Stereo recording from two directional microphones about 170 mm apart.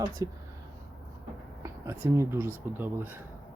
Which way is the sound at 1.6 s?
15° right (ahead or behind).